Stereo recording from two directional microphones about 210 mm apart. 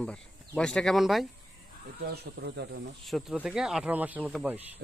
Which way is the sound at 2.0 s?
50° right (ahead or behind).